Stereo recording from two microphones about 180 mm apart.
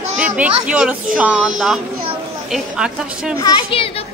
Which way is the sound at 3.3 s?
20° left (ahead or behind).